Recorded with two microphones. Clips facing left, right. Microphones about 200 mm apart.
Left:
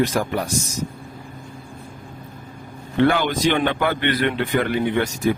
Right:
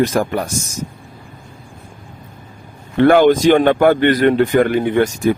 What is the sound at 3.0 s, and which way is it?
Speech, 50° right (ahead or behind).